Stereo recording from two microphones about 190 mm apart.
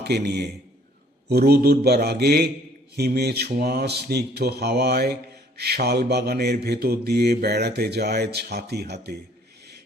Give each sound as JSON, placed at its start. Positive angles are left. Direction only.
{"t": 0.0, "sound": "a man's voice", "side_deg": -60}
{"t": 1.3, "sound": "mantra", "side_deg": -55}